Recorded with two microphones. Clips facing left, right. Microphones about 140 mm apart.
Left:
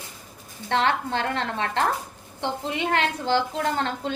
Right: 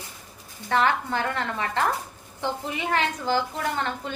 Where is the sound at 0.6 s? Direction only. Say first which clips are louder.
Even; 30° left (ahead or behind).